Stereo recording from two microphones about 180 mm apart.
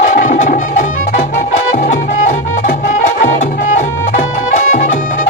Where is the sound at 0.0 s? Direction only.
45° left (ahead or behind).